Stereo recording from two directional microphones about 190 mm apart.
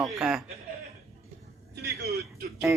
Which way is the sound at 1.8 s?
60° right (ahead or behind).